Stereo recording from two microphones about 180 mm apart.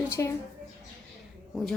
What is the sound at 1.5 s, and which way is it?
Speech, centre (ahead or behind).